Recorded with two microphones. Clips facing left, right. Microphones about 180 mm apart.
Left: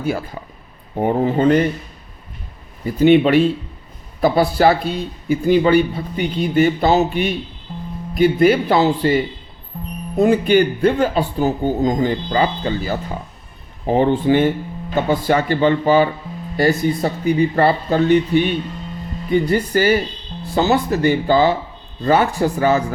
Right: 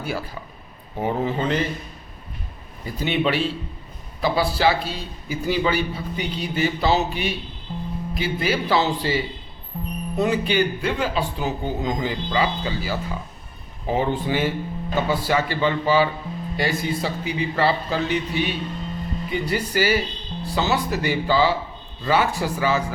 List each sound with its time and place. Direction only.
0.0 s speech: 45° left (ahead or behind)
3.0 s speech: 50° left (ahead or behind)